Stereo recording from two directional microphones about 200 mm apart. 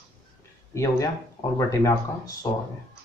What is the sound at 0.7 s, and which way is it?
Speech, 15° left (ahead or behind).